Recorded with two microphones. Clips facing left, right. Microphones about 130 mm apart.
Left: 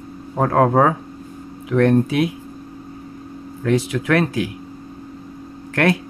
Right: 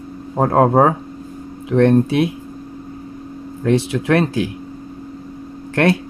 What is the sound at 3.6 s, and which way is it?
Speech, 30° right (ahead or behind).